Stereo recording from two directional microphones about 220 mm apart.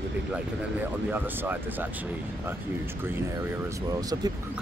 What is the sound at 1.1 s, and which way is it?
Speech, 10° right (ahead or behind).